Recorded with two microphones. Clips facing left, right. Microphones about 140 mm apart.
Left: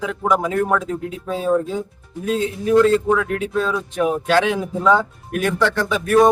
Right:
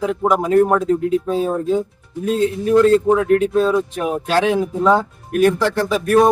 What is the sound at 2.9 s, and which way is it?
Speech, 35° right (ahead or behind).